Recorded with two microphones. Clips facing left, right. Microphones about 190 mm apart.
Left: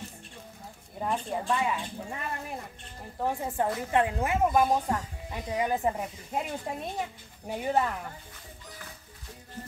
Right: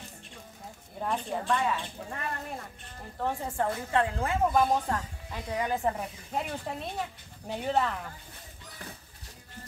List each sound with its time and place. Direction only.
1.0 s a woman's voice: 5° left (ahead or behind)